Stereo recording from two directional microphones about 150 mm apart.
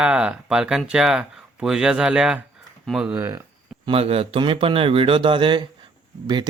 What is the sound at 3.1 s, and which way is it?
Speech, 20° right (ahead or behind).